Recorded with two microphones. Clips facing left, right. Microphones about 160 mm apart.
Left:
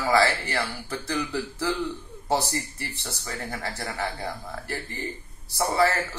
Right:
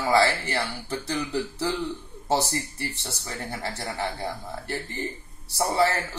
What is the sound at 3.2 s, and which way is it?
Speech, 20° right (ahead or behind).